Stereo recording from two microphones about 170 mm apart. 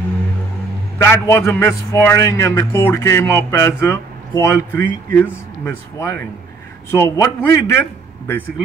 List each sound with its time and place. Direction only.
0.9 s a man's voice: 15° left (ahead or behind)